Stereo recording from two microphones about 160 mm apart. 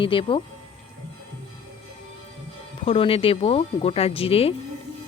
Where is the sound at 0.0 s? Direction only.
35° left (ahead or behind).